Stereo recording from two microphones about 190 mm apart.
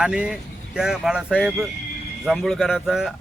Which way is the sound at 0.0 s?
5° right (ahead or behind).